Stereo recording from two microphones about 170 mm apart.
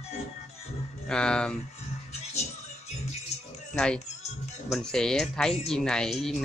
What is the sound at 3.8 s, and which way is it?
Speech, 5° left (ahead or behind).